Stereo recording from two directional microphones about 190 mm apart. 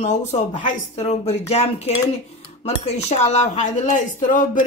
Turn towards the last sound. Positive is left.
turn(degrees=45)  # may be behind; listen again after turning